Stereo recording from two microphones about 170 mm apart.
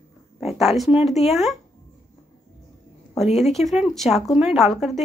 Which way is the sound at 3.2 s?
40° left (ahead or behind).